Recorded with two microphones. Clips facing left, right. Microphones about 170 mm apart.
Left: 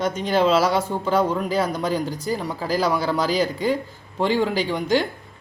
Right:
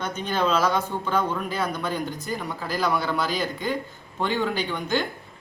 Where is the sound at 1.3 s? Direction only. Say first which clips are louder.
Left 5 dB; 35° left (ahead or behind).